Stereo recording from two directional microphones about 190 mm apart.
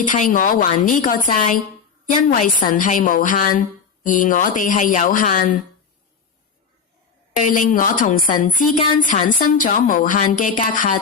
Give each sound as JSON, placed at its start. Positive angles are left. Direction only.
{"t": 0.0, "sound": "a woman's voice", "side_deg": 45}
{"t": 7.3, "sound": "a woman's voice", "side_deg": 45}